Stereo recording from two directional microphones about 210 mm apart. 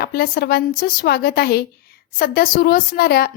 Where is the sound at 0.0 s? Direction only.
45° left (ahead or behind).